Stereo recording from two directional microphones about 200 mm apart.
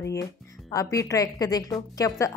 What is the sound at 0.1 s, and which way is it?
A woman's voice, 15° left (ahead or behind).